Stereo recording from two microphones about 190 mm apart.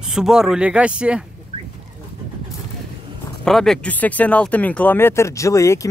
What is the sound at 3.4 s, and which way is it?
Speech, centre (ahead or behind).